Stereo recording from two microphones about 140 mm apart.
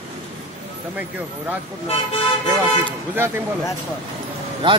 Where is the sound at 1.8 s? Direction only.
45° left (ahead or behind).